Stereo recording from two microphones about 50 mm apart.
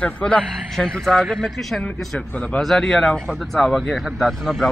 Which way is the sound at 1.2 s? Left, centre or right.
Centre.